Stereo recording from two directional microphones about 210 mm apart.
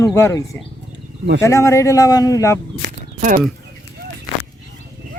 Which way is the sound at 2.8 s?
40° right (ahead or behind).